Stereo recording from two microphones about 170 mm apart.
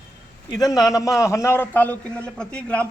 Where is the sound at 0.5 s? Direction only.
20° left (ahead or behind).